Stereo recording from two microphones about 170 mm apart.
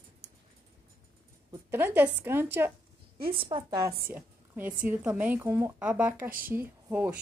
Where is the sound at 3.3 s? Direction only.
30° right (ahead or behind).